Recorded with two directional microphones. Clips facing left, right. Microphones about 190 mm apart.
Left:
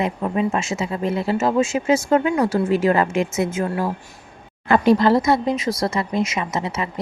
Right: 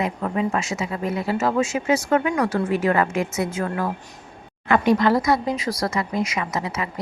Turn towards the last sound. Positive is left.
turn(degrees=25)  # may be behind; listen again after turning